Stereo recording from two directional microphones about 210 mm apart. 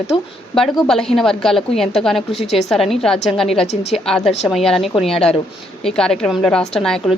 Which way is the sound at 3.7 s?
30° left (ahead or behind).